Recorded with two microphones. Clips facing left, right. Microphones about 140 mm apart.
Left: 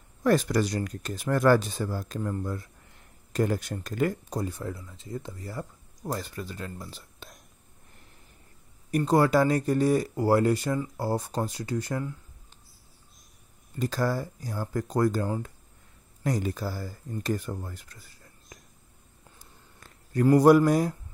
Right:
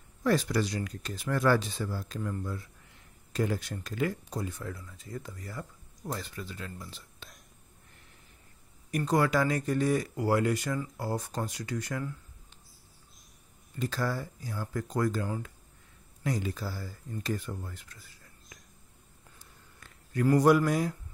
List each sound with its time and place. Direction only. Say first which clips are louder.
0.2 s speech: left 4 dB; 50° left (ahead or behind); by 5.7 s 30° left (ahead or behind)
6.1 s speech: left 4 dB; 40° left (ahead or behind)
8.9 s speech: left 5 dB; 30° left (ahead or behind)
13.7 s speech: left 4 dB; 40° left (ahead or behind)
19.8 s speech: left 4 dB; 35° left (ahead or behind)